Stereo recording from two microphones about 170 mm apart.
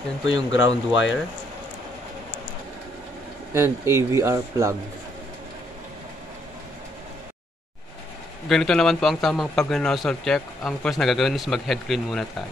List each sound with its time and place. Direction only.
0.3 s speech: 90° left
3.5 s speech: 15° right (ahead or behind)
8.5 s a man's voice: 5° left (ahead or behind)